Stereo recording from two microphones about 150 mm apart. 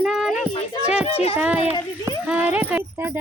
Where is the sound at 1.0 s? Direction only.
45° left (ahead or behind).